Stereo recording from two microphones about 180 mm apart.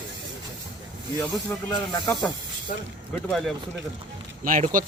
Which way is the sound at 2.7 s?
50° left (ahead or behind).